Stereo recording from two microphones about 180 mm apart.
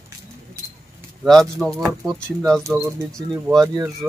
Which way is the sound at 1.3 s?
Centre (ahead or behind).